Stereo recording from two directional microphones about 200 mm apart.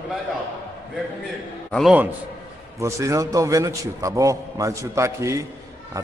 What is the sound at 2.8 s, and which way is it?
A man's voice, 15° right (ahead or behind).